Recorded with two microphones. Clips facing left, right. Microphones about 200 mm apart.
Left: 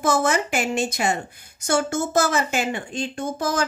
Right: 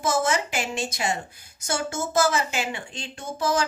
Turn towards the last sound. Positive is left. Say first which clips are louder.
# left 1 dB
turn(degrees=50)  # may be behind; listen again after turning